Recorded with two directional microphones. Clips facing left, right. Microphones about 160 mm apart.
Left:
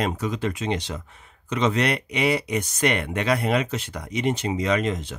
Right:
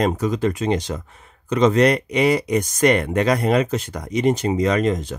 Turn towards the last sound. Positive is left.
turn(degrees=-45)  # may be behind; listen again after turning